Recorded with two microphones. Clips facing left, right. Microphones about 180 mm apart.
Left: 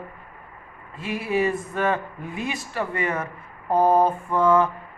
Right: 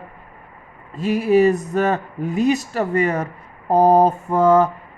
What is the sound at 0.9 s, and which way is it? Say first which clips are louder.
Speech: right 9 dB; 40° right (ahead or behind).